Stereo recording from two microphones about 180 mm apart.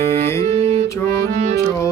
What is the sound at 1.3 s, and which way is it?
Music, 45° right (ahead or behind).